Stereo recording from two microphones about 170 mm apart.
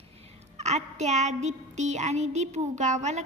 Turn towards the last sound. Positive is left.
turn(degrees=-45)  # may be behind; listen again after turning